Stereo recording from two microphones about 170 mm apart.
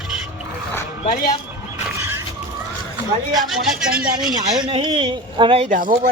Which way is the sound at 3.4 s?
5° right (ahead or behind).